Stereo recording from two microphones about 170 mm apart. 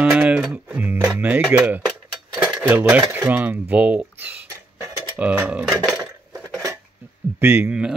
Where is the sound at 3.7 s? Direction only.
10° right (ahead or behind).